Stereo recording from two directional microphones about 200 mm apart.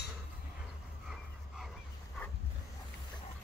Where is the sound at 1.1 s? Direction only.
Centre (ahead or behind).